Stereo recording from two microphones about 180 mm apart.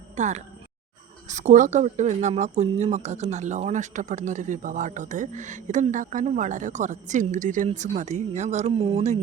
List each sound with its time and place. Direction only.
0.2 s speech: 40° right (ahead or behind)